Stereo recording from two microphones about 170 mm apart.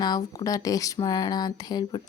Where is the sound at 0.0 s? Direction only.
20° left (ahead or behind).